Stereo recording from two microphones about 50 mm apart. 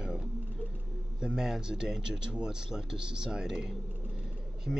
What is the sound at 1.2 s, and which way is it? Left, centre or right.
Speech, centre.